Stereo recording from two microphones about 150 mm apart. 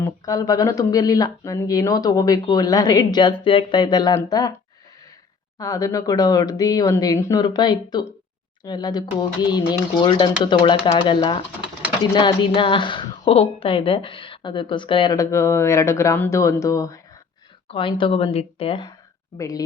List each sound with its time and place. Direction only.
0.0 s speech: 25° left (ahead or behind)
5.5 s a woman's voice: 25° left (ahead or behind)
15.1 s speech: 20° left (ahead or behind)
17.7 s a woman's voice: 35° left (ahead or behind)